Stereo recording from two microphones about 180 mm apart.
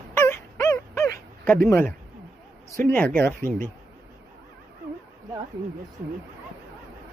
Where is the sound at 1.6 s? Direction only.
15° left (ahead or behind).